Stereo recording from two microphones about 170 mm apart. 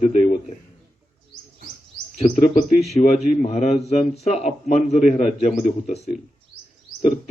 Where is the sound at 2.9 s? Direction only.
40° left (ahead or behind).